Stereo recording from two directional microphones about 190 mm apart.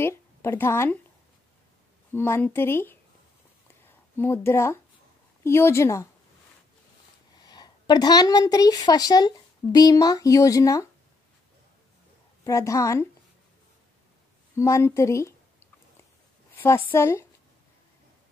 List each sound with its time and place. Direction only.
0.0 s a woman's voice: 15° left (ahead or behind)
2.1 s speech: 10° left (ahead or behind)
4.2 s speech: 10° left (ahead or behind)
7.4 s a woman's voice: 20° left (ahead or behind)
12.4 s speech: 15° left (ahead or behind)
14.5 s a sound: 15° left (ahead or behind)
16.5 s speech: 15° left (ahead or behind)